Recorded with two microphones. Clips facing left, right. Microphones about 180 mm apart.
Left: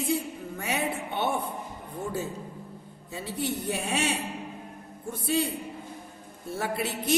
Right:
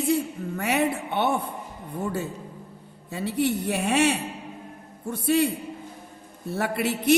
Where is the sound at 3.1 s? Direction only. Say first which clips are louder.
Right 7 dB; 65° right (ahead or behind).